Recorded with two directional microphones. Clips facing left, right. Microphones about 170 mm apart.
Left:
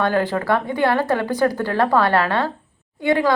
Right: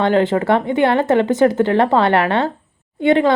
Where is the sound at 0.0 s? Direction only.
20° right (ahead or behind).